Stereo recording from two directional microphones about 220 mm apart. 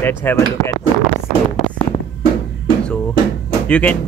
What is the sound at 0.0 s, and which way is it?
Speech, 10° left (ahead or behind).